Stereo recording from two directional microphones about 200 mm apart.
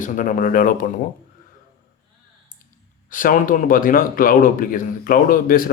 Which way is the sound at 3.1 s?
40° left (ahead or behind).